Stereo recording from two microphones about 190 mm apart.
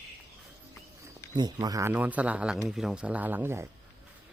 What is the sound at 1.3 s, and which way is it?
Speech, 20° right (ahead or behind).